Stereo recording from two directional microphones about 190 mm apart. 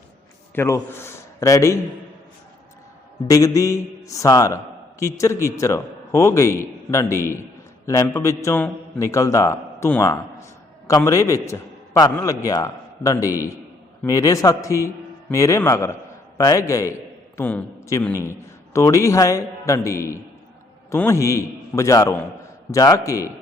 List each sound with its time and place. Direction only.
0.5 s a man's voice: 10° left (ahead or behind)
3.2 s a man's voice: 15° left (ahead or behind)